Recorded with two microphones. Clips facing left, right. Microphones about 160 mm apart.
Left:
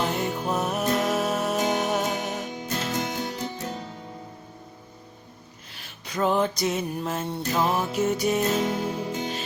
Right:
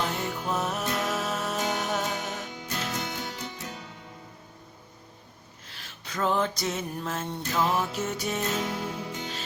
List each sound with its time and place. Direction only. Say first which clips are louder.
0.5 s music: left 4 dB; 15° left (ahead or behind)
2.6 s music: left 5 dB; 40° left (ahead or behind)
5.7 s music: left 4 dB; 15° left (ahead or behind)
8.5 s music: left 5 dB; 25° left (ahead or behind)